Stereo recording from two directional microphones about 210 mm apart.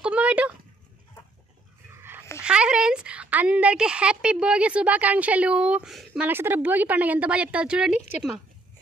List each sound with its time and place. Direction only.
0.0 s a sound: 5° right (ahead or behind)
2.0 s dog: 10° right (ahead or behind)
2.4 s a woman's voice: 5° right (ahead or behind)